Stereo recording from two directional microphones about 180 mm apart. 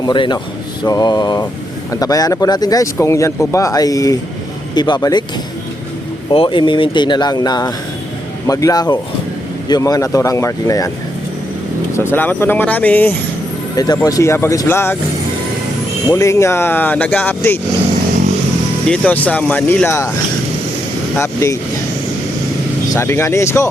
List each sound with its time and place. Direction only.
0.0 s speech: 25° left (ahead or behind)
6.3 s speech: 30° left (ahead or behind)
11.9 s speech: 10° left (ahead or behind)
13.7 s speech: 20° left (ahead or behind)
16.0 s speech: 15° left (ahead or behind)
18.9 s speech: 10° left (ahead or behind)
21.2 s speech: 15° left (ahead or behind)
23.0 s speech: 15° left (ahead or behind)